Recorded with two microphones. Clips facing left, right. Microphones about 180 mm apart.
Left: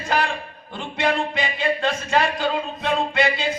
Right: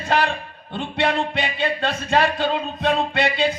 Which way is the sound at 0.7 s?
60° right (ahead or behind).